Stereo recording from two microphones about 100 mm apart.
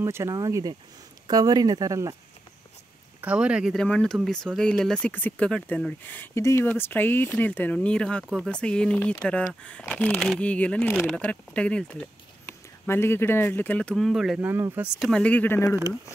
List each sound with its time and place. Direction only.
0.0 s speech: 30° right (ahead or behind)
3.2 s speech: 10° right (ahead or behind)
3.7 s speech: 10° left (ahead or behind)
10.1 s speech: centre (ahead or behind)
10.4 s speech: 10° left (ahead or behind)
12.4 s speech: 25° left (ahead or behind); by 14.4 s 5° right (ahead or behind)
14.4 s speech: 20° right (ahead or behind)
15.0 s speech: centre (ahead or behind)
15.2 s speech: 20° left (ahead or behind)